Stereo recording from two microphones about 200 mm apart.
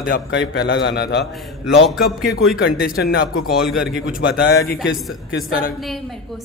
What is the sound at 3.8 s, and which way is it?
Speech, 45° left (ahead or behind).